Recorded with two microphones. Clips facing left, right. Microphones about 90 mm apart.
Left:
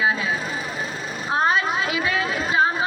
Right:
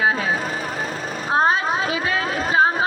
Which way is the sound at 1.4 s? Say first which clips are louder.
Right 2 dB; 35° right (ahead or behind).